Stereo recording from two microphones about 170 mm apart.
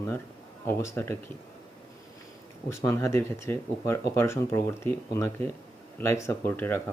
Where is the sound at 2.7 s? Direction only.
20° left (ahead or behind).